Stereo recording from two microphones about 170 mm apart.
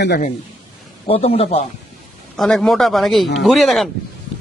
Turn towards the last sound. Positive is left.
turn(degrees=0)  # may be behind; listen again after turning